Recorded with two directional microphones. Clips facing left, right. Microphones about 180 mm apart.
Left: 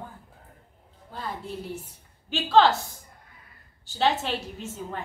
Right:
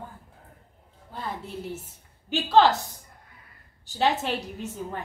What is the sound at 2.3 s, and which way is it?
A woman's voice, 15° right (ahead or behind).